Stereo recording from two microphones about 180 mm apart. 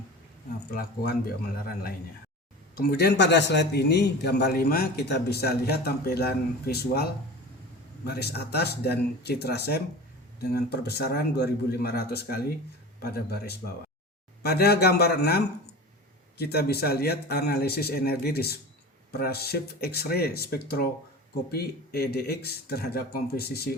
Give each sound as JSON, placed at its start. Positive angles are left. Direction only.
{"t": 0.7, "sound": "a man's voice", "side_deg": 60}
{"t": 2.7, "sound": "a man's voice", "side_deg": 65}